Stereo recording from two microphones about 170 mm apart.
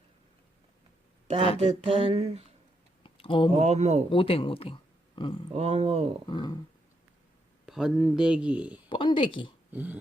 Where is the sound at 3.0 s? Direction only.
30° left (ahead or behind).